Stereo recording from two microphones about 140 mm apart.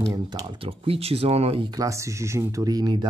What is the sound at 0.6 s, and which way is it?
Speech, 45° right (ahead or behind).